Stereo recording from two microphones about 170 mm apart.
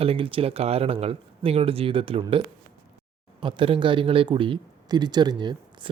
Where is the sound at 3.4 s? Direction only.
30° right (ahead or behind).